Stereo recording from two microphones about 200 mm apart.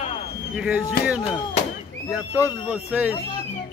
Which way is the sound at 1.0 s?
5° right (ahead or behind).